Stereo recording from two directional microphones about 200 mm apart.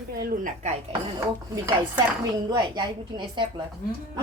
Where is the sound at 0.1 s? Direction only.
45° right (ahead or behind).